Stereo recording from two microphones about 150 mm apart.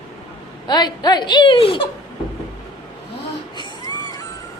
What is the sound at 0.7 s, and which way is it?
Speech, 30° left (ahead or behind).